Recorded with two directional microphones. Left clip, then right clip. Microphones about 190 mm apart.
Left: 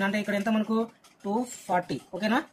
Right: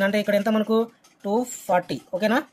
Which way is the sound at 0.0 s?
45° right (ahead or behind).